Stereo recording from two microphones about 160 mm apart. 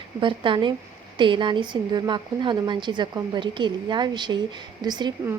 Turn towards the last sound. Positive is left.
turn(degrees=-25)  # may be behind; listen again after turning